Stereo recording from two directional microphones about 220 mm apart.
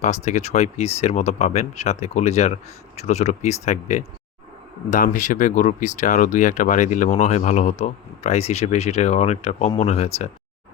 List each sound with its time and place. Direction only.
0.0 s speech: 30° left (ahead or behind)